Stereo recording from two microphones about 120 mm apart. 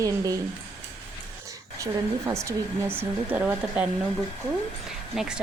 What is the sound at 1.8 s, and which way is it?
Speech, 25° right (ahead or behind).